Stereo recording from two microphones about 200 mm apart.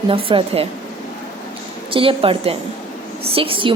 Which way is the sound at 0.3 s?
30° right (ahead or behind).